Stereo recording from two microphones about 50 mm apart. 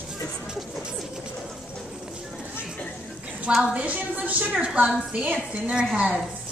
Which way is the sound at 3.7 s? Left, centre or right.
Right.